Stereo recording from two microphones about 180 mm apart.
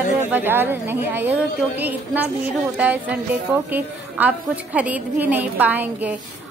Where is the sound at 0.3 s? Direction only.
10° right (ahead or behind).